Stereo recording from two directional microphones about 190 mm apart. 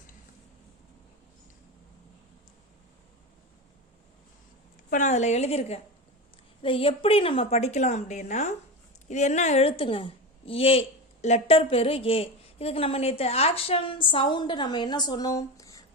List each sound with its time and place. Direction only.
4.9 s a woman's voice: 40° left (ahead or behind); by 15.8 s 15° left (ahead or behind)